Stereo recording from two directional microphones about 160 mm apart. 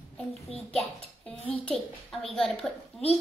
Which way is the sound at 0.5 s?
40° left (ahead or behind).